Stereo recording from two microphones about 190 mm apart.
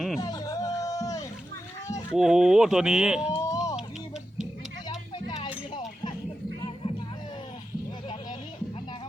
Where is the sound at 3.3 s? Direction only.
15° left (ahead or behind).